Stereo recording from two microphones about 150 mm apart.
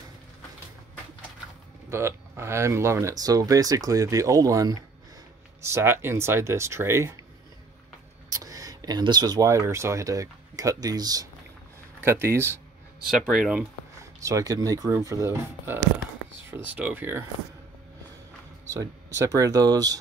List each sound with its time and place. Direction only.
1.9 s speech: 15° right (ahead or behind)
8.3 s speech: 25° right (ahead or behind)
13.1 s speech: centre (ahead or behind)
14.2 s speech: 20° right (ahead or behind)
18.7 s speech: 20° right (ahead or behind)